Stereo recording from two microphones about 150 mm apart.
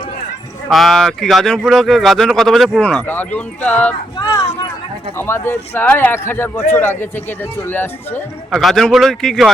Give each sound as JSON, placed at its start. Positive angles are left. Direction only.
{"t": 0.7, "sound": "speech", "side_deg": 0}
{"t": 5.1, "sound": "speech", "side_deg": 15}
{"t": 8.4, "sound": "speech", "side_deg": 0}